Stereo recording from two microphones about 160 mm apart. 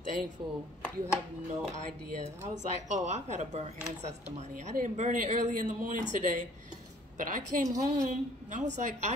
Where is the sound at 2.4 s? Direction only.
50° right (ahead or behind).